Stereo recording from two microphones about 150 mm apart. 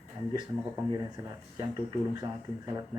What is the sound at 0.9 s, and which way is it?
Speech, 25° right (ahead or behind).